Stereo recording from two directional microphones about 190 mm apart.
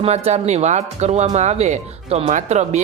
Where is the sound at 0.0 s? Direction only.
35° right (ahead or behind).